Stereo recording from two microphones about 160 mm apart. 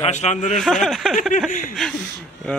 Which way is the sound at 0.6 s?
Centre (ahead or behind).